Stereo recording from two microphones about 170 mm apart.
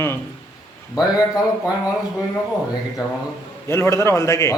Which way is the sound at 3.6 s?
15° left (ahead or behind).